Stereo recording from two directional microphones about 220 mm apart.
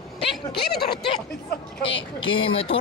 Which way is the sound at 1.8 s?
55° left (ahead or behind).